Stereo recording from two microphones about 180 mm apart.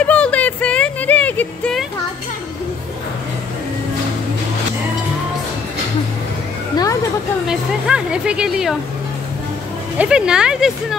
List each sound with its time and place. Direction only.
0.0 s a sound: 5° left (ahead or behind)
7.4 s a woman's voice: 5° right (ahead or behind)
9.9 s a woman's voice: 5° right (ahead or behind)